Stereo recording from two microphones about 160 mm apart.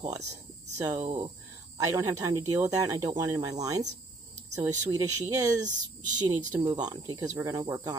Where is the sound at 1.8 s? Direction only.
20° right (ahead or behind).